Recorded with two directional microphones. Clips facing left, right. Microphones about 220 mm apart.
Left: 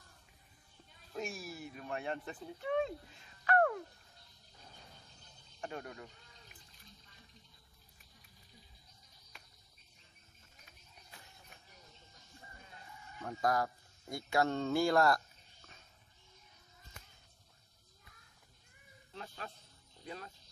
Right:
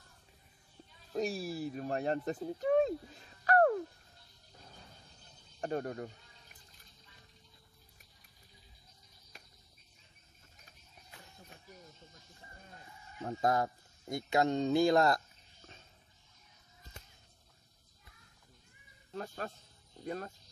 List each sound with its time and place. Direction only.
1.1 s speech: 35° right (ahead or behind)
5.6 s a sound: 40° right (ahead or behind)
13.2 s speech: 25° right (ahead or behind)
19.1 s speech: 45° right (ahead or behind)